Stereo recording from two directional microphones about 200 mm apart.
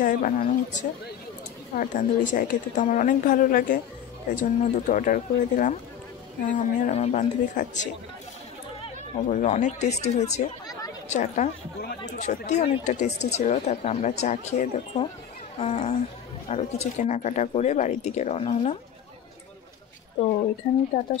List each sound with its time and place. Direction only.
0.0 s speech: 40° left (ahead or behind)
20.9 s speech: 35° left (ahead or behind)